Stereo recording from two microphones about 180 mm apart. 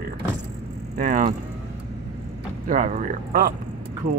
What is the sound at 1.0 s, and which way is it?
Speech, 45° right (ahead or behind).